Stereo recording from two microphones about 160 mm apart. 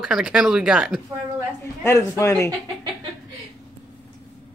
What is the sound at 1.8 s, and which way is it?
Speech, 20° left (ahead or behind).